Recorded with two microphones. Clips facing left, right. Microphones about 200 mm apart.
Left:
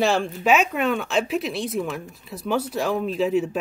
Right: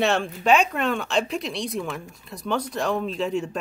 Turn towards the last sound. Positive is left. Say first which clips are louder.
# left 4 dB
turn(degrees=5)  # may be behind; listen again after turning